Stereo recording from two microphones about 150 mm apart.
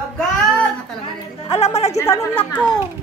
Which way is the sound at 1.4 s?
45° left (ahead or behind).